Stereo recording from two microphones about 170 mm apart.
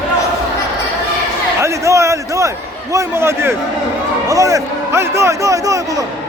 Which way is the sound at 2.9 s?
15° right (ahead or behind).